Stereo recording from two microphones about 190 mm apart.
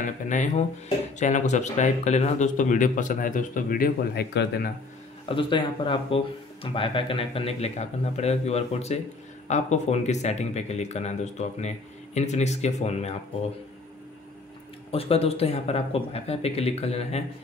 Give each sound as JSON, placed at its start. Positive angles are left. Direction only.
{"t": 0.0, "sound": "speech", "side_deg": 40}
{"t": 5.3, "sound": "speech", "side_deg": 25}
{"t": 14.9, "sound": "speech", "side_deg": 30}